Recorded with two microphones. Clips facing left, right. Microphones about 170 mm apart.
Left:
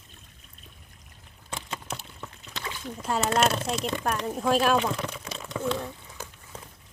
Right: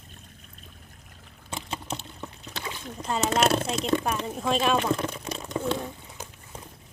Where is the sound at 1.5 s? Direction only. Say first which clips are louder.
Right 2 dB; 25° right (ahead or behind).